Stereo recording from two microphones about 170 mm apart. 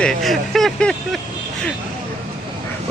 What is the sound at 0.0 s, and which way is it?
Speech, centre (ahead or behind).